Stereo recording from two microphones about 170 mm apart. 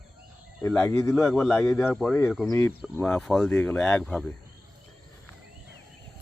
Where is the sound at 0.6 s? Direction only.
5° left (ahead or behind).